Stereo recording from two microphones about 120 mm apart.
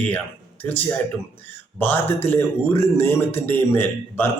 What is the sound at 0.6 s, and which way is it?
A man's voice, 15° left (ahead or behind).